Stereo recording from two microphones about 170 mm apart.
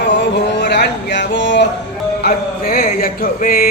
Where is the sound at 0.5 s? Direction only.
80° left.